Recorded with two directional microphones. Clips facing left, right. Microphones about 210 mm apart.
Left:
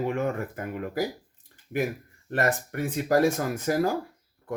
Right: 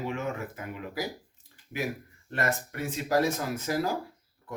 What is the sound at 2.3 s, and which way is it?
Speech, 50° left (ahead or behind).